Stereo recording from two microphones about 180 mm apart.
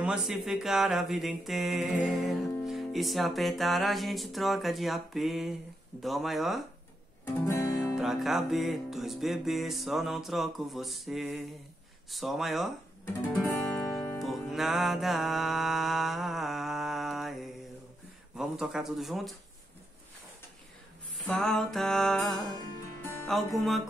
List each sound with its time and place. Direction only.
0.0 s mantra: 5° right (ahead or behind)
7.4 s music: 15° left (ahead or behind)
7.8 s mantra: centre (ahead or behind)
13.5 s guitar: 15° left (ahead or behind)
14.2 s music: centre (ahead or behind)
18.3 s mantra: 5° right (ahead or behind)
21.3 s mantra: centre (ahead or behind)